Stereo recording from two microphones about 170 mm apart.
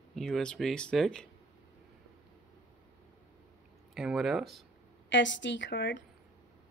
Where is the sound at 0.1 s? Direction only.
Centre (ahead or behind).